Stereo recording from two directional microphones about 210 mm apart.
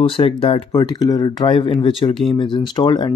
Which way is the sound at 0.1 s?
25° left (ahead or behind).